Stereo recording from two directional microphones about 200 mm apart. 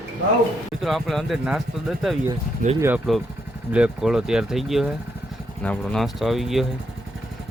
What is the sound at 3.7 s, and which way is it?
Speech, 5° right (ahead or behind).